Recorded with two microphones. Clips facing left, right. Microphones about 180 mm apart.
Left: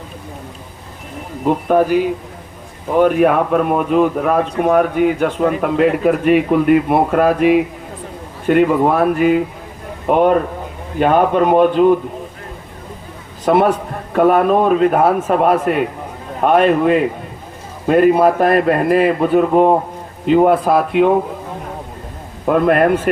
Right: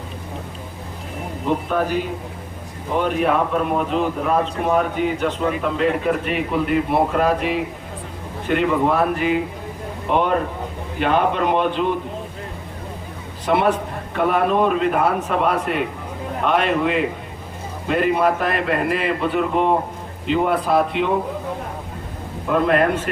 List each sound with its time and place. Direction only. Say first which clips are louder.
3.0 s a man's voice: left 7 dB; 50° left (ahead or behind)
13.4 s a man's voice: left 5 dB; 50° left (ahead or behind)
22.4 s a man's voice: left 5 dB; 50° left (ahead or behind)